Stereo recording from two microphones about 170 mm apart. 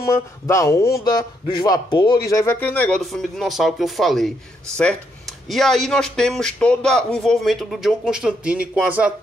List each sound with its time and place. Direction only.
0.0 s a man's voice: 15° left (ahead or behind); by 9.1 s 10° right (ahead or behind)